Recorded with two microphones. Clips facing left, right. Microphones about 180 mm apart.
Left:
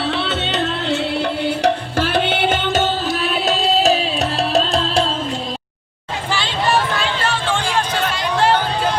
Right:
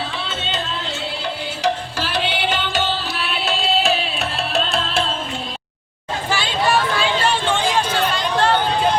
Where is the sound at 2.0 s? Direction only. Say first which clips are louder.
Left 5 dB; 50° left (ahead or behind).